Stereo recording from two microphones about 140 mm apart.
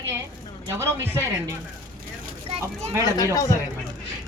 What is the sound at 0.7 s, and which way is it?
Beatboxing, 20° right (ahead or behind).